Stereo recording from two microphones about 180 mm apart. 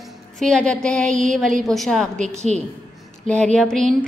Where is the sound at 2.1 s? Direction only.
40° right (ahead or behind).